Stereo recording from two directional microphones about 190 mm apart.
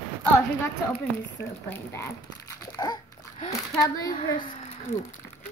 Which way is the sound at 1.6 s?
10° left (ahead or behind).